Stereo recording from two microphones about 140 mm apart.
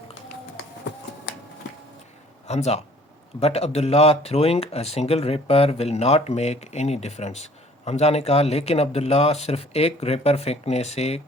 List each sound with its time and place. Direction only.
2.5 s speech: 50° left (ahead or behind)